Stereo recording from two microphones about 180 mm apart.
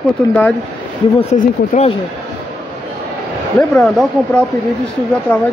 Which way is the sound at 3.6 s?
5° left (ahead or behind).